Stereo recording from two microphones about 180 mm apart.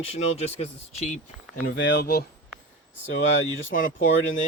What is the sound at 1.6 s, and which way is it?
Speech, 75° left (ahead or behind).